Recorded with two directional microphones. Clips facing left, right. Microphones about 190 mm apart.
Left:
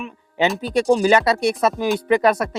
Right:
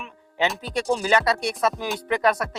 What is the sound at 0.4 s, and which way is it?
Speech, 5° left (ahead or behind).